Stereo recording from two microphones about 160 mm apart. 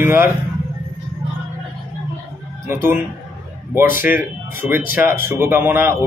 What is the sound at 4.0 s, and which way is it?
A man's voice, 10° right (ahead or behind).